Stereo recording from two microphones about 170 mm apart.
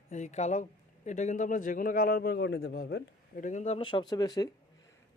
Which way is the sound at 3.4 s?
45° left (ahead or behind).